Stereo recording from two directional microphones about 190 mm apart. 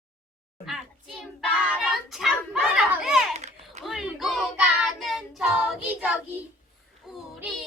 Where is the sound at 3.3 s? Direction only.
35° right (ahead or behind).